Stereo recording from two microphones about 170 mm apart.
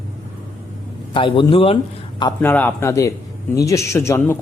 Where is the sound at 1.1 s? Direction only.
30° left (ahead or behind).